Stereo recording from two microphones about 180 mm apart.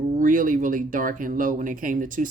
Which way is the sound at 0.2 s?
50° right (ahead or behind).